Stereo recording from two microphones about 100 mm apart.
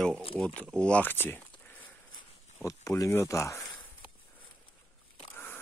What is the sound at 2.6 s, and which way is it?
Speech, 30° left (ahead or behind).